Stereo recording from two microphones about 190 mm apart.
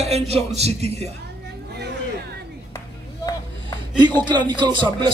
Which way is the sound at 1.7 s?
60° right (ahead or behind).